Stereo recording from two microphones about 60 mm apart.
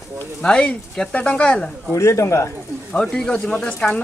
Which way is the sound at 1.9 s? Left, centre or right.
Left.